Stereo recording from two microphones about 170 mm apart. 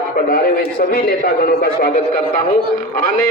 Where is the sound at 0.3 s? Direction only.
60° left (ahead or behind).